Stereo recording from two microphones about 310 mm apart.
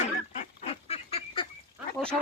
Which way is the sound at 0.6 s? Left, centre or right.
Centre.